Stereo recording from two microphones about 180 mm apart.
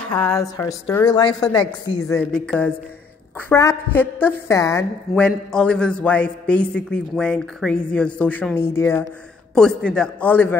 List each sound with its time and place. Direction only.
0.0 s a woman's voice: 10° left (ahead or behind)
2.1 s a man's voice: 5° left (ahead or behind)
5.1 s a man's voice: 5° left (ahead or behind)